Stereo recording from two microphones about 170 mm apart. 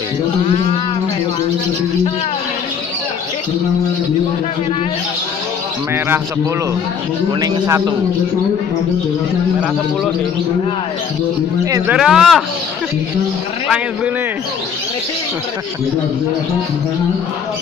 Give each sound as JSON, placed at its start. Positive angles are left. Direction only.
{"t": 7.3, "sound": "a man's voice", "side_deg": -20}
{"t": 11.7, "sound": "speech", "side_deg": -15}
{"t": 12.0, "sound": "speech", "side_deg": 0}